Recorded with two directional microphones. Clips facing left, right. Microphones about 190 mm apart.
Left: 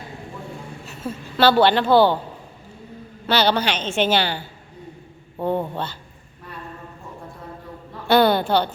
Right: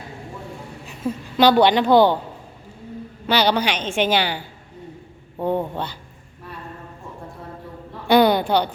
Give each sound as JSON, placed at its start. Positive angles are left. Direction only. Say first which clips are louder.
{"t": 0.9, "sound": "a woman's voice", "louder": "right 5 dB", "side_deg": -15}
{"t": 3.2, "sound": "a woman's voice", "louder": "even", "side_deg": -10}
{"t": 8.0, "sound": "a sound", "louder": "right 1 dB", "side_deg": -15}